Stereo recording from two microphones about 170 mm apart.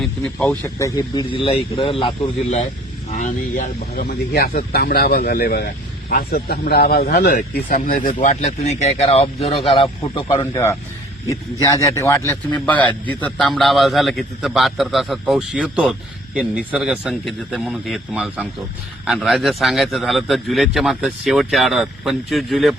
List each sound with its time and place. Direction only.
0.0 s speech: 5° left (ahead or behind); by 2.3 s 30° left (ahead or behind)
3.1 s speech: 45° left (ahead or behind); by 10.3 s 30° left (ahead or behind)
10.3 s a man's voice: 15° left (ahead or behind); by 22.7 s centre (ahead or behind)